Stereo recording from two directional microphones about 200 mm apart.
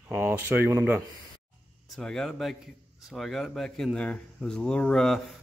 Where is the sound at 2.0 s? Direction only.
5° left (ahead or behind).